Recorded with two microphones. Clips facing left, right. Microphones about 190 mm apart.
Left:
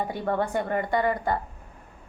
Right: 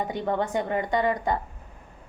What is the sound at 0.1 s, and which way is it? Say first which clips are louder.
A woman's voice: even; 20° right (ahead or behind).